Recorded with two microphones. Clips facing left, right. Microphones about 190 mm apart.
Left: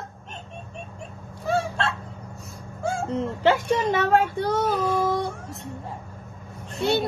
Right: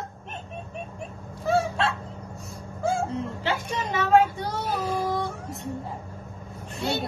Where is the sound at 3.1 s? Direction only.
60° left (ahead or behind).